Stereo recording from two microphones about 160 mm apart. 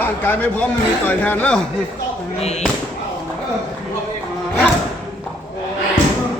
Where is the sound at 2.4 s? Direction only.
40° left (ahead or behind).